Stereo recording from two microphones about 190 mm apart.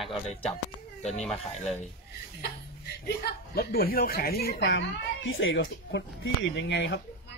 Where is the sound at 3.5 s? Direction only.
50° left (ahead or behind).